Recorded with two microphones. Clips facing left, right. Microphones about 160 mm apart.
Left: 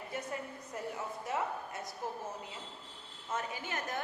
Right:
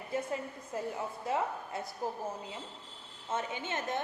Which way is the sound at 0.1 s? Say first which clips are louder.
Right 6 dB; 25° right (ahead or behind).